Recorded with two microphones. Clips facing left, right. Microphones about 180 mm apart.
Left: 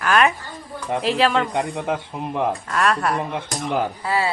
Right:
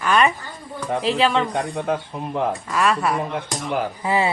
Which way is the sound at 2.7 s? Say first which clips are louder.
Right 2 dB; centre (ahead or behind).